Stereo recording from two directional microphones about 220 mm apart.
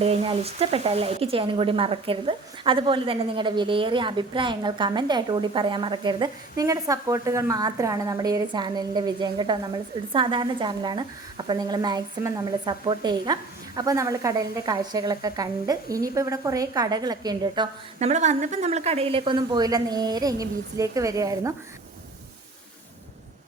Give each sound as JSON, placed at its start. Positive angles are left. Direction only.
{"t": 0.0, "sound": "a woman's voice", "side_deg": -25}